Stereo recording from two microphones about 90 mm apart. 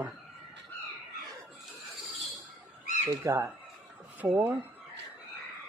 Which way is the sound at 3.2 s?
30° right (ahead or behind).